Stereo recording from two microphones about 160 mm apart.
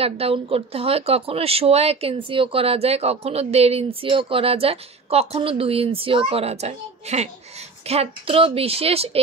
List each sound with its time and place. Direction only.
0.0 s speech: 35° right (ahead or behind)